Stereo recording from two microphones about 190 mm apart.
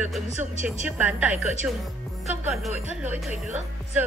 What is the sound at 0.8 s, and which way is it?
A woman's voice, 5° right (ahead or behind).